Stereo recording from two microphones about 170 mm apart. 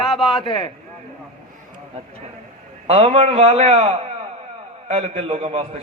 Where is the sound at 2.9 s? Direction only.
30° right (ahead or behind).